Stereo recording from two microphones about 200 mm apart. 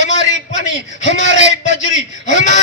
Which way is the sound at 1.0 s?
35° left (ahead or behind).